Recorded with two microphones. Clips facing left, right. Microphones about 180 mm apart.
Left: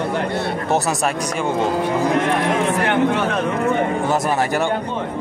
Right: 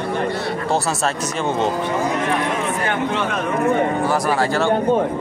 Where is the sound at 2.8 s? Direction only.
65° left (ahead or behind).